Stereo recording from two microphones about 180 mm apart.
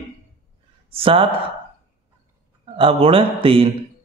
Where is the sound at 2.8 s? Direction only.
30° right (ahead or behind).